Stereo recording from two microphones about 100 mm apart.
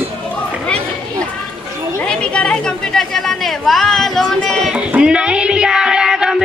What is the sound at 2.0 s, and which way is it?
Chatter, 10° left (ahead or behind).